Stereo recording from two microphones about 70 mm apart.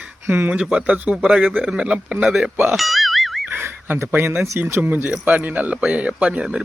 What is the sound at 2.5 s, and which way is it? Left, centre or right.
Speech, right.